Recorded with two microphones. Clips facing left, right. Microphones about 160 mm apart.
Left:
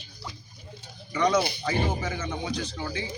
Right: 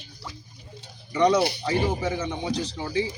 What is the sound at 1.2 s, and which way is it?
A man's voice, 30° right (ahead or behind).